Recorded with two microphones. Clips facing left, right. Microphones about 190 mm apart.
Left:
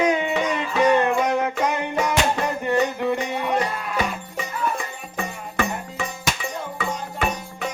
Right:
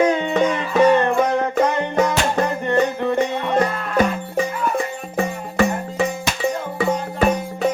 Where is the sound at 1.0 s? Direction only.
10° left (ahead or behind).